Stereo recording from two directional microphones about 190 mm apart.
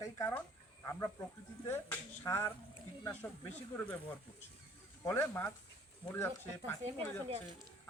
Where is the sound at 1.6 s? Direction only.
15° left (ahead or behind).